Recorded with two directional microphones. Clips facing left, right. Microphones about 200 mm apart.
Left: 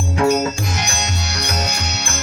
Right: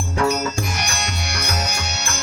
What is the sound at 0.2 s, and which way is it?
Music, 20° left (ahead or behind).